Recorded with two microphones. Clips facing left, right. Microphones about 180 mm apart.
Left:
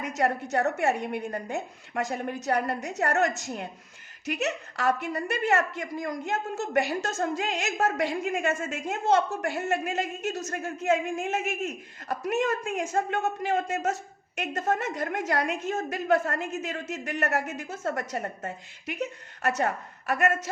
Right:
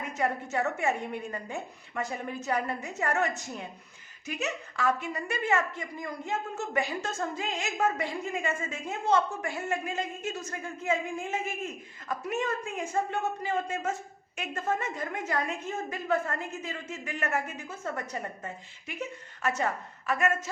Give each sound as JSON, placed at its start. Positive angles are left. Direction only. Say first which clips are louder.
{"t": 0.0, "sound": "a woman's voice", "louder": "left 4 dB", "side_deg": 80}
{"t": 18.4, "sound": "a woman's voice", "louder": "left 5 dB", "side_deg": 75}